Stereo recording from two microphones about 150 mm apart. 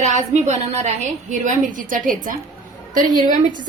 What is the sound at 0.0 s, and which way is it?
A woman's voice, 50° right (ahead or behind).